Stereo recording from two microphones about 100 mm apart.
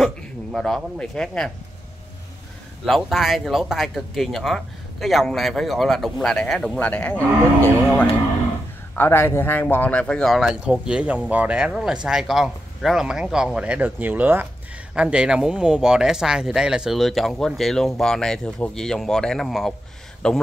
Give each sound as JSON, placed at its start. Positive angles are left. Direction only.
{"t": 0.9, "sound": "speech", "side_deg": 10}
{"t": 2.8, "sound": "speech", "side_deg": 0}